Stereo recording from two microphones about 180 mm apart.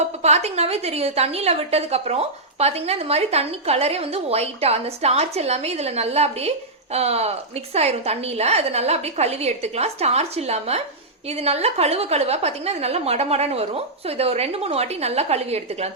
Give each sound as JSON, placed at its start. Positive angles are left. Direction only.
{"t": 0.2, "sound": "a woman's voice", "side_deg": -35}